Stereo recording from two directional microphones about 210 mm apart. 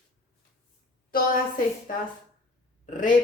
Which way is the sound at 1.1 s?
45° left (ahead or behind).